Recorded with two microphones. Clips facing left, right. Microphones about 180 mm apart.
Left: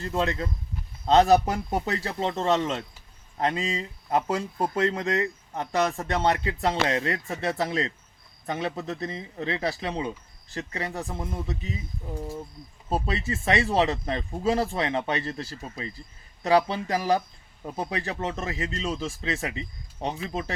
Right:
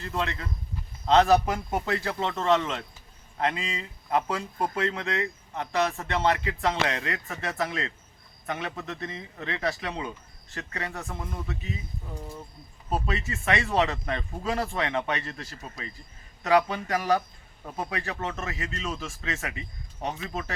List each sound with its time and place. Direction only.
0.0 s speech: 40° left (ahead or behind)
12.9 s speech: 35° left (ahead or behind)